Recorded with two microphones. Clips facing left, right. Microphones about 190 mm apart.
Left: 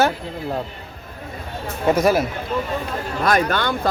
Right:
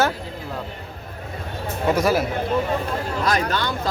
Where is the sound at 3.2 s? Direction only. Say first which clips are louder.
Left 5 dB; 60° left (ahead or behind).